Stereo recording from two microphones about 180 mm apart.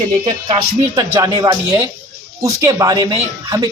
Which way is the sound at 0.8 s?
15° right (ahead or behind).